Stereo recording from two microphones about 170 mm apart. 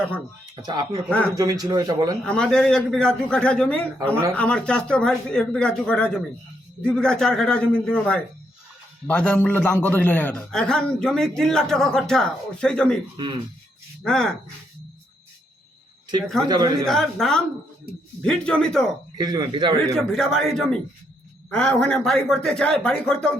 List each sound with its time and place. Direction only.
0.5 s a man's voice: 25° right (ahead or behind)
2.2 s a man's voice: 5° left (ahead or behind)
14.0 s a man's voice: 5° left (ahead or behind)
16.5 s a man's voice: 25° right (ahead or behind)
16.8 s a man's voice: centre (ahead or behind)
19.1 s a man's voice: 25° right (ahead or behind)
20.0 s a man's voice: centre (ahead or behind)